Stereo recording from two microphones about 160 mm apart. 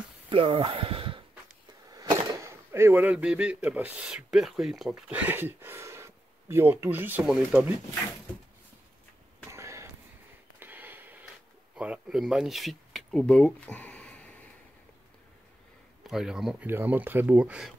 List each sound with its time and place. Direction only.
0.3 s speech: 35° right (ahead or behind)
2.4 s speech: 15° right (ahead or behind)
9.5 s a sound: 20° right (ahead or behind)
11.7 s speech: 5° right (ahead or behind)
16.1 s speech: 5° right (ahead or behind)